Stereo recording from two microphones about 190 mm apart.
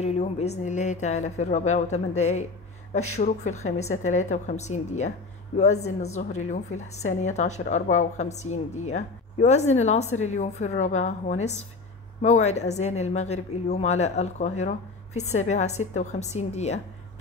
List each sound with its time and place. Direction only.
0.0 s a woman's voice: 35° left (ahead or behind)